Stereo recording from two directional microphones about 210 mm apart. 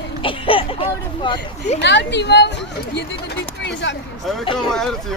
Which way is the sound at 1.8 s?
55° left (ahead or behind).